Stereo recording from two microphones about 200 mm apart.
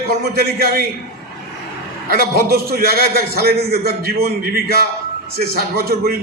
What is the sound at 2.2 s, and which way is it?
A man's voice, 50° right (ahead or behind).